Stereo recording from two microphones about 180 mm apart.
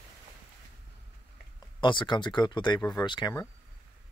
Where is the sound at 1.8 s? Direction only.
25° left (ahead or behind).